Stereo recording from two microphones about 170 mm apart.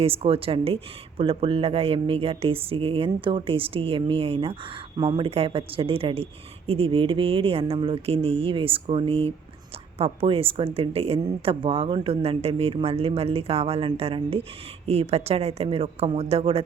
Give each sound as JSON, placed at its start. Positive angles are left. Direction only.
{"t": 0.0, "sound": "speech", "side_deg": -35}